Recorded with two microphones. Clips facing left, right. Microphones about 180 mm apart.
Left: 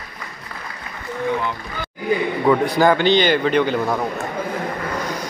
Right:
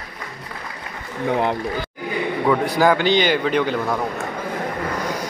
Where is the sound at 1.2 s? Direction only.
65° right (ahead or behind).